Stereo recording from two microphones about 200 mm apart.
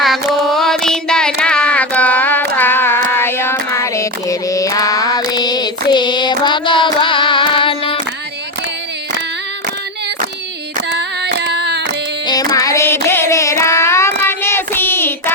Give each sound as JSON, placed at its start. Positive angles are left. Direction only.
{"t": 0.0, "sound": "carnatic music", "side_deg": 0}
{"t": 2.6, "sound": "child singing", "side_deg": 10}
{"t": 10.9, "sound": "carnatic music", "side_deg": -55}
{"t": 12.3, "sound": "child singing", "side_deg": 20}